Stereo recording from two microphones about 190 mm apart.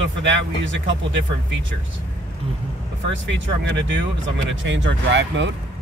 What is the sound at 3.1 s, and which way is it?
Speech, 75° right (ahead or behind).